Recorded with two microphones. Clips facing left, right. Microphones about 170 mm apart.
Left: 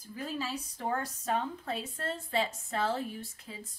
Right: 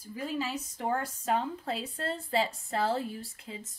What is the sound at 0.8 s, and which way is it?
A woman's voice, 25° right (ahead or behind).